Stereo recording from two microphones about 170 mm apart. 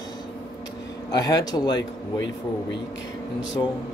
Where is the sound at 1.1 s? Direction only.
25° left (ahead or behind).